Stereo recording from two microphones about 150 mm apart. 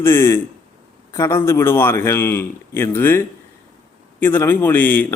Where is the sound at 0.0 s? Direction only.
15° left (ahead or behind).